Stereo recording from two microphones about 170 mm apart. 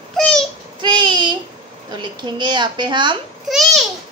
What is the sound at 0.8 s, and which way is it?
Child singing, 25° right (ahead or behind).